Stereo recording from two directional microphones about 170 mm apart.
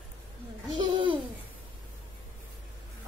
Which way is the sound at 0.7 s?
30° right (ahead or behind).